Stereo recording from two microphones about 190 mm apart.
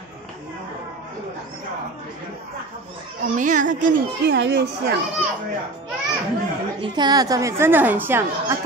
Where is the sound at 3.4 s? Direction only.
40° right (ahead or behind).